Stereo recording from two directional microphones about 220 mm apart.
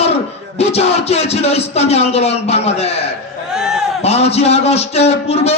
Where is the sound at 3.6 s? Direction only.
5° right (ahead or behind).